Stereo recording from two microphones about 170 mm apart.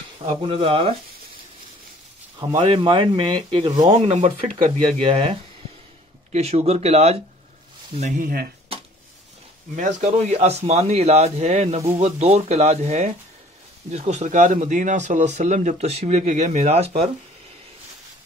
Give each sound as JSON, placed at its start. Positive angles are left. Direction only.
{"t": 0.2, "sound": "speech", "side_deg": -35}
{"t": 2.3, "sound": "speech", "side_deg": -30}
{"t": 3.8, "sound": "speech", "side_deg": -40}
{"t": 8.2, "sound": "speech", "side_deg": -60}
{"t": 9.8, "sound": "speech", "side_deg": -45}